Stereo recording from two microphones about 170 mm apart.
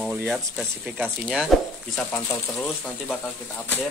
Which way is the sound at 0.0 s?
10° right (ahead or behind).